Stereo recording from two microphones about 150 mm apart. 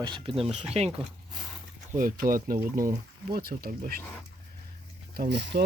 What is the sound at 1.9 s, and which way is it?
Speech, 65° right (ahead or behind).